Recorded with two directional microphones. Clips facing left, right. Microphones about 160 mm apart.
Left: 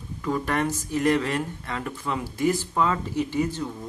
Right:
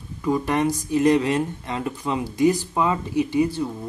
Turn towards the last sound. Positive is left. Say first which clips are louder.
# right 5 dB
turn(degrees=-10)  # may be behind; listen again after turning